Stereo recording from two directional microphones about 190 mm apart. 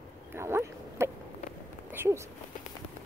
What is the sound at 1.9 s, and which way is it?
Speech, 15° right (ahead or behind).